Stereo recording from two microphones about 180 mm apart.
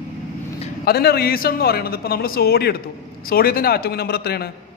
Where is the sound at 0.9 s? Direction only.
60° left (ahead or behind).